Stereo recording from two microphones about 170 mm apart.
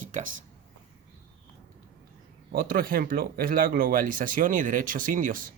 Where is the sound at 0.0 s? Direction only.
50° right (ahead or behind).